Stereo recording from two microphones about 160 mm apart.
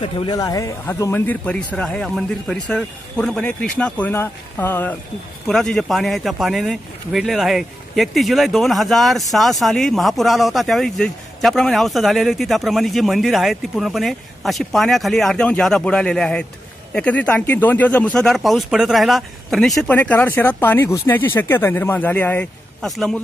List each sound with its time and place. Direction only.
0.0 s speech: 30° left (ahead or behind); by 23.2 s 5° left (ahead or behind)